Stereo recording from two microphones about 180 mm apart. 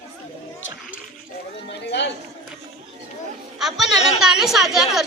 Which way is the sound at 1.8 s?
70° left (ahead or behind).